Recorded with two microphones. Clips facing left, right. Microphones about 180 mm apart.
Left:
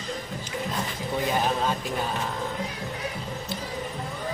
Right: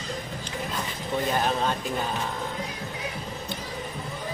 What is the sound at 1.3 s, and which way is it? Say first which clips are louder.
Speech: even; 5° left (ahead or behind).